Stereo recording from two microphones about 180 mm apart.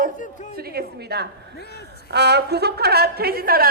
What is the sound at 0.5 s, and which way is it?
A woman's voice, 60° right (ahead or behind).